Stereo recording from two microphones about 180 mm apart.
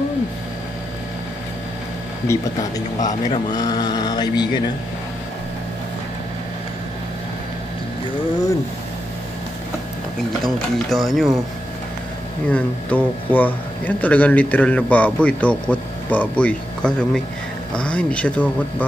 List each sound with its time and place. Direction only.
2.3 s a man's voice: 15° left (ahead or behind)
3.5 s a sound: 25° left (ahead or behind)
10.4 s speech: centre (ahead or behind)
12.4 s a man's voice: 10° left (ahead or behind)